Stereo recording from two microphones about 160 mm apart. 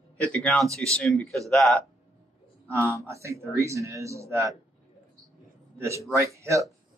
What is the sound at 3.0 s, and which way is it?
Speech, 20° right (ahead or behind).